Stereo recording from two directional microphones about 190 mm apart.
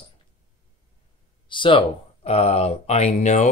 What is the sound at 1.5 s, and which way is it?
Speech, 25° left (ahead or behind).